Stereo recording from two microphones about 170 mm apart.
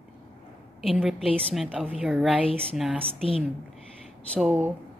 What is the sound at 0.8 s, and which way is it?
Speech, centre (ahead or behind).